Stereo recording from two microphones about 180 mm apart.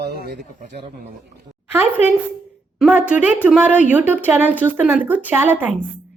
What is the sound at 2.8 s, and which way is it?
Speech, 5° right (ahead or behind).